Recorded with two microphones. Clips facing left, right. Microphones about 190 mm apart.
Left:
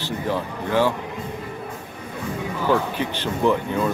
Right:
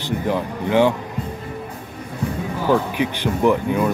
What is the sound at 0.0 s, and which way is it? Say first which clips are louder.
Speech: right 3 dB; 15° right (ahead or behind).